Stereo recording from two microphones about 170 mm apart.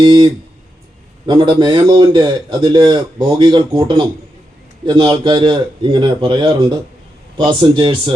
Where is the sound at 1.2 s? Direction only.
25° right (ahead or behind).